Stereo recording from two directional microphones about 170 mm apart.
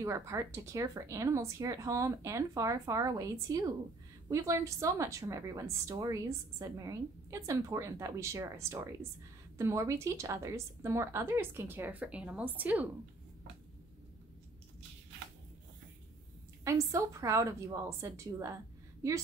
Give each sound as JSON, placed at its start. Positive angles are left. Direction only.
{"t": 0.0, "sound": "a woman's voice", "side_deg": -15}
{"t": 16.6, "sound": "a woman's voice", "side_deg": -20}